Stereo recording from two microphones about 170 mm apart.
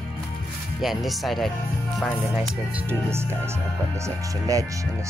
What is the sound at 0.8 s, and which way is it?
Speech, centre (ahead or behind).